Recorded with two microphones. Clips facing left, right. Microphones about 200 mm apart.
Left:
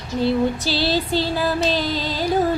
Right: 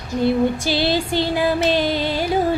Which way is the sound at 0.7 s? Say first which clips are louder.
Right 1 dB; 15° right (ahead or behind).